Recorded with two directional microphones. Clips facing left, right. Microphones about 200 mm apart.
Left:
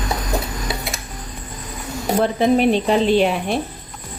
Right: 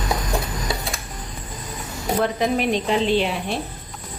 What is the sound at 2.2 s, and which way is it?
Speech, 30° left (ahead or behind).